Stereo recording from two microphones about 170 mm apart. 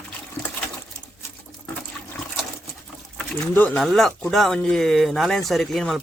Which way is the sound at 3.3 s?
5° left (ahead or behind).